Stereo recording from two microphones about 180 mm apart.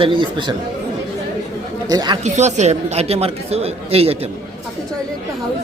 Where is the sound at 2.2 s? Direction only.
40° right (ahead or behind).